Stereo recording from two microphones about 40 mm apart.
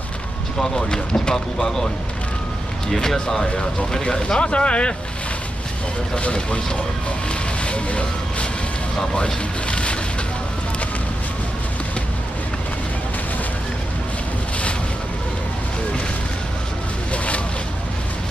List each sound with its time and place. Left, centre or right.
0.6 s speech: centre
2.9 s speech: centre; by 4.9 s left
6.1 s speech: left
7.6 s vehicle: left
9.1 s speech: left